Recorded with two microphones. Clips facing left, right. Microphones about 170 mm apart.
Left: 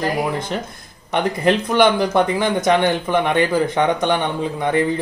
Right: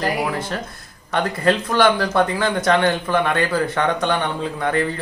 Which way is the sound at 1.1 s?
20° left (ahead or behind).